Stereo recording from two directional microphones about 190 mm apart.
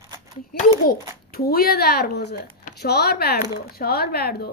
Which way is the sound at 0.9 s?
50° left (ahead or behind).